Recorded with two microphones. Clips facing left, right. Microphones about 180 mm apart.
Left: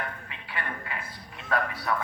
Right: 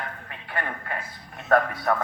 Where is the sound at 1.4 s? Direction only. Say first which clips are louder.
Right 7 dB; 50° right (ahead or behind).